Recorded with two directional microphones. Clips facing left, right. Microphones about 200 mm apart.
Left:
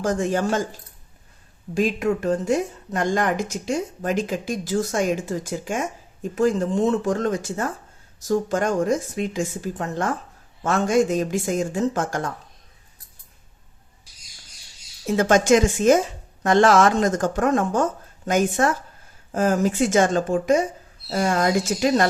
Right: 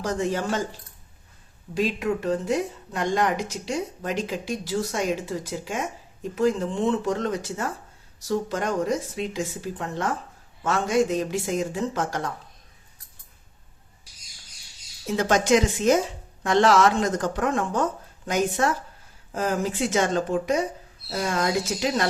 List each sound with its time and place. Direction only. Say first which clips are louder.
0.0 s speech: left 4 dB; 50° left (ahead or behind)
1.7 s speech: left 3 dB; 45° left (ahead or behind)
15.1 s speech: left 4 dB; 50° left (ahead or behind)